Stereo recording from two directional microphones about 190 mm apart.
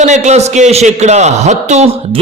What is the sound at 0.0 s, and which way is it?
A man's voice, 40° right (ahead or behind).